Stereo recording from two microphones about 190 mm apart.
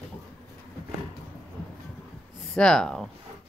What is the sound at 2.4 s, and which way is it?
Speech, centre (ahead or behind).